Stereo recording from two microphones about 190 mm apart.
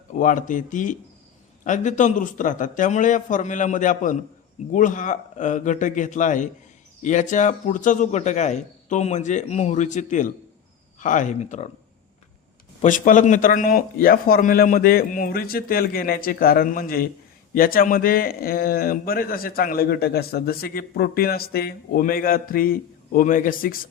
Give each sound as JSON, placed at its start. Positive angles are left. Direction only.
{"t": 0.1, "sound": "a man's voice", "side_deg": 45}
{"t": 12.8, "sound": "speech", "side_deg": 45}